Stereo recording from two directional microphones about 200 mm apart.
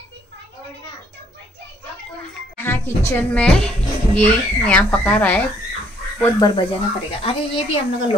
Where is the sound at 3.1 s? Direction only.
5° left (ahead or behind).